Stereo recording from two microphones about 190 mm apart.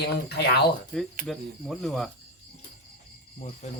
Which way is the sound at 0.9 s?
5° left (ahead or behind).